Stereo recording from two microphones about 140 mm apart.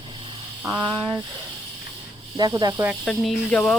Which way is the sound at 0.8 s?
35° right (ahead or behind).